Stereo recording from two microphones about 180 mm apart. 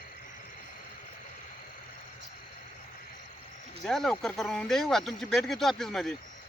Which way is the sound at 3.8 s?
Centre (ahead or behind).